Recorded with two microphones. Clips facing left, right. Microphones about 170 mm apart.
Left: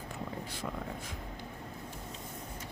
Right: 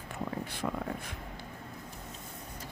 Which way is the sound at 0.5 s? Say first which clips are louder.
Right 4 dB; 60° right (ahead or behind).